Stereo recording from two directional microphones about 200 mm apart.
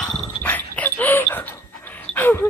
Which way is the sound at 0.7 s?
10° left (ahead or behind).